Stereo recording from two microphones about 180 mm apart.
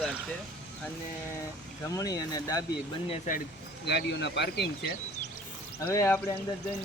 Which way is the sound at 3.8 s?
70° left (ahead or behind).